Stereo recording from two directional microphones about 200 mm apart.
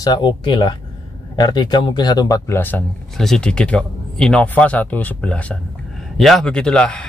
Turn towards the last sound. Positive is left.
turn(degrees=5)  # may be behind; listen again after turning